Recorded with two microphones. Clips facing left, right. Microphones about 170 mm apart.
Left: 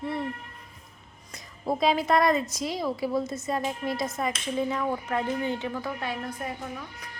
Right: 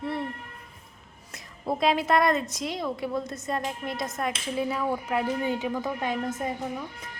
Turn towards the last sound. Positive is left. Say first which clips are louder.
# right 4 dB
turn(degrees=-20)  # may be behind; listen again after turning